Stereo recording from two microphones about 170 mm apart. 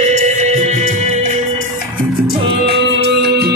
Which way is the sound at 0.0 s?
45° right (ahead or behind).